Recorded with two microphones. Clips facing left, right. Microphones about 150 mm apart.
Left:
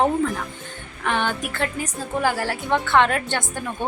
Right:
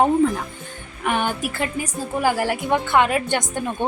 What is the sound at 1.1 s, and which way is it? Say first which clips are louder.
A woman's voice: right 1 dB; 10° right (ahead or behind).